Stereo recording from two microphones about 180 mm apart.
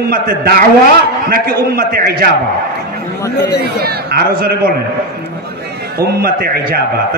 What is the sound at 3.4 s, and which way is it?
Speech, 65° left (ahead or behind).